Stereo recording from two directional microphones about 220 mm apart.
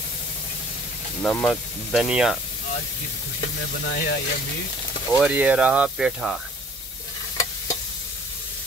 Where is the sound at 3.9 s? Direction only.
45° left (ahead or behind).